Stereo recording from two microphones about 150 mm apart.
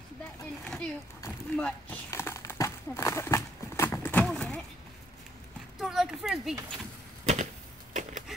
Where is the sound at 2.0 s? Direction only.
15° left (ahead or behind).